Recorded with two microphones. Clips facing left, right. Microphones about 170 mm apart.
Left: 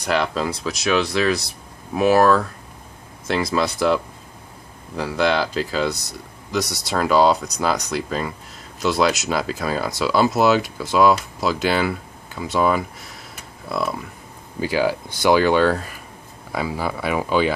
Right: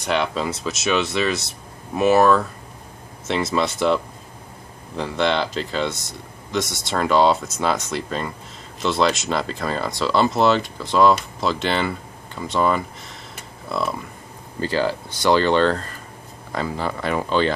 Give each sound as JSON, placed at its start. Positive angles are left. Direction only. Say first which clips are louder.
{"t": 0.0, "sound": "speech", "louder": "left 1 dB", "side_deg": 0}